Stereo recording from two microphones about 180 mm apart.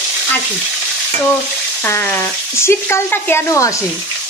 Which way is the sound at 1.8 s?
10° left (ahead or behind).